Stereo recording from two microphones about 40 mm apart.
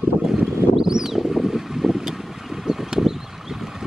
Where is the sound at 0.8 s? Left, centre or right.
Centre.